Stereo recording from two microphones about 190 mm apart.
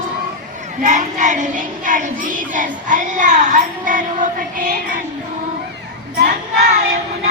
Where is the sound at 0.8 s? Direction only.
40° right (ahead or behind).